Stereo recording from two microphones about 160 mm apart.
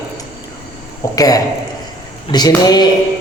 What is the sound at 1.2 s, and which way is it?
Speech, 25° left (ahead or behind).